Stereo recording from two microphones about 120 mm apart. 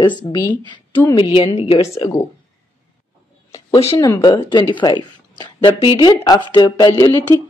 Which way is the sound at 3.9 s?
30° left (ahead or behind).